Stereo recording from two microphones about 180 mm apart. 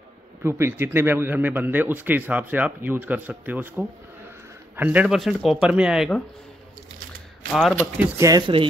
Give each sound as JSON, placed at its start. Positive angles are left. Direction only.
{"t": 0.4, "sound": "speech", "side_deg": -15}
{"t": 7.5, "sound": "speech", "side_deg": -5}
{"t": 8.2, "sound": "speech", "side_deg": -20}